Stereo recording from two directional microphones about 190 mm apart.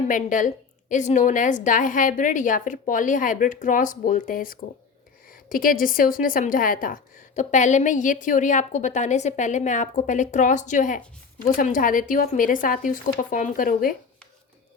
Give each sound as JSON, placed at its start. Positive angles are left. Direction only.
{"t": 0.1, "sound": "a woman's voice", "side_deg": 40}